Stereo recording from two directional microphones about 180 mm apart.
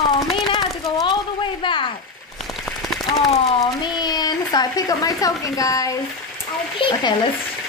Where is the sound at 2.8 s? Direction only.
Centre (ahead or behind).